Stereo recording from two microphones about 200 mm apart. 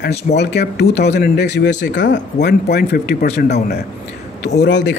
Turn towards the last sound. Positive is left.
turn(degrees=65)  # may be behind; listen again after turning